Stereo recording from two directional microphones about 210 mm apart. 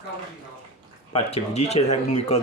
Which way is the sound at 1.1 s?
25° left (ahead or behind).